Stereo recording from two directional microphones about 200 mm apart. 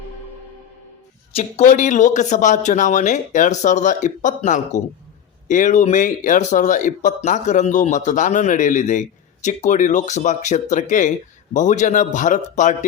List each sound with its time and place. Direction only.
1.4 s speech: 35° left (ahead or behind)